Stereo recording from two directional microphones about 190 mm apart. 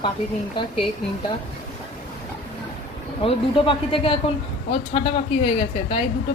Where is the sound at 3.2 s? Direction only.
30° left (ahead or behind).